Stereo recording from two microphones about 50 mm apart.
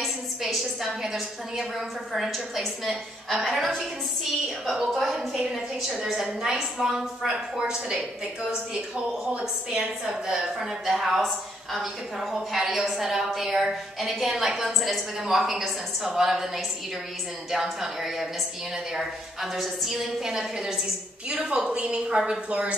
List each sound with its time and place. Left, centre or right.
0.0 s a sound: centre
0.8 s a woman's voice: centre
4.9 s a woman's voice: centre
10.3 s a woman's voice: centre; by 22.8 s right